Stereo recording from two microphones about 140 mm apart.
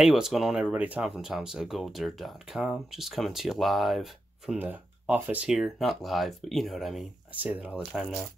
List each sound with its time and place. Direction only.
0.0 s speech: centre (ahead or behind)
4.6 s speech: 10° right (ahead or behind)